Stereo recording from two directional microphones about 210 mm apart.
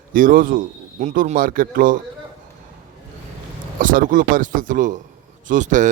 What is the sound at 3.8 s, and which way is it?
Speech, 40° right (ahead or behind).